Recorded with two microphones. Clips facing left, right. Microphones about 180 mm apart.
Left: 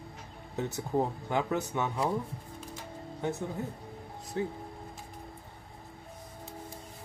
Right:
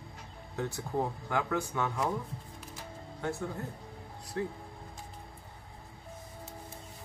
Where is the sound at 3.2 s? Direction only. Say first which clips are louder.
Left 2 dB; 20° left (ahead or behind).